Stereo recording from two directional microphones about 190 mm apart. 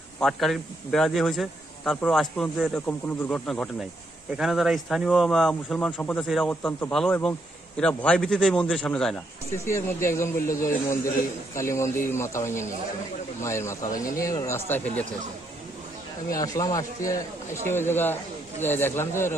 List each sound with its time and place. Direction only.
0.2 s speech: centre (ahead or behind)
9.7 s a man's voice: 15° left (ahead or behind)
16.3 s a man's voice: 20° left (ahead or behind)